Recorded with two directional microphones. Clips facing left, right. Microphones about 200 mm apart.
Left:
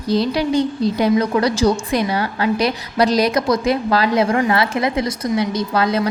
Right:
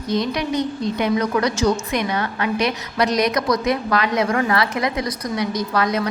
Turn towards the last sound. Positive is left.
turn(degrees=30)  # may be behind; listen again after turning